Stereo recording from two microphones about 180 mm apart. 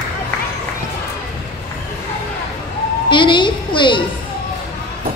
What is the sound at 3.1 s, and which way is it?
Speech, 25° left (ahead or behind).